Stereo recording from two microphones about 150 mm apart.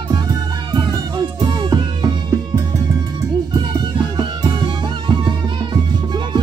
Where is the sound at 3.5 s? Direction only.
30° right (ahead or behind).